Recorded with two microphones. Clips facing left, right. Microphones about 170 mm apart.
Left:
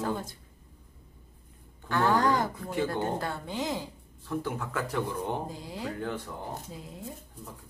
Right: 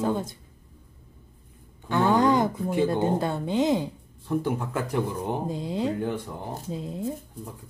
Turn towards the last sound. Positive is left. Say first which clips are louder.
# right 10 dB
turn(degrees=-25)  # may be behind; listen again after turning